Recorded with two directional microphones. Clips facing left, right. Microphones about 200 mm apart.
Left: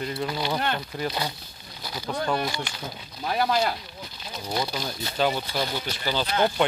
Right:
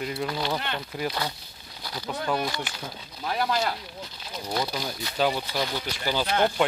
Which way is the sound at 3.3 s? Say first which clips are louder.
Left 3 dB; 25° left (ahead or behind).